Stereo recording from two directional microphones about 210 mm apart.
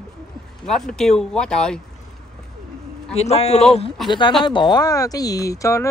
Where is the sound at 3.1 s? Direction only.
30° left (ahead or behind).